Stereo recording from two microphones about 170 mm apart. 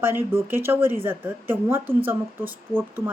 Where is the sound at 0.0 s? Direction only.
15° right (ahead or behind).